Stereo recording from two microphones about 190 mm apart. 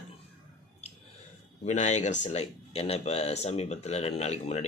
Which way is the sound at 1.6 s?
40° left (ahead or behind).